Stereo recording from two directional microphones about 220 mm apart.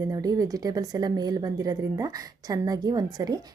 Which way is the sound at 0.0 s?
15° right (ahead or behind).